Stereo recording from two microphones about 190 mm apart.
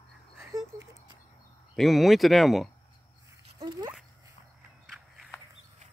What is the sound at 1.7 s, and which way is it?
Speech, centre (ahead or behind).